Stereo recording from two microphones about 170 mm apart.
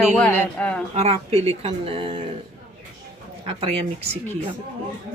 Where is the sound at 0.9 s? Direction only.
35° right (ahead or behind).